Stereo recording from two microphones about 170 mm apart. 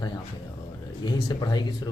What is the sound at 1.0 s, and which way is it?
Speech, 25° left (ahead or behind).